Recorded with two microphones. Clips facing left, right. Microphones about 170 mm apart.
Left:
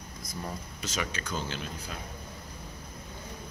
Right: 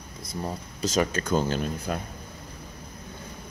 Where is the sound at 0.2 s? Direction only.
30° right (ahead or behind); by 2.0 s 45° right (ahead or behind).